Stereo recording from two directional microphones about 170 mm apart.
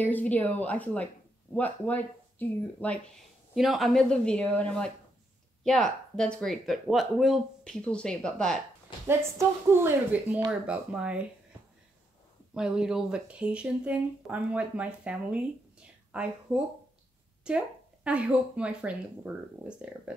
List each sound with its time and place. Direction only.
0.0 s speech: 10° left (ahead or behind)
9.8 s speech: 15° right (ahead or behind)
12.5 s speech: 5° right (ahead or behind)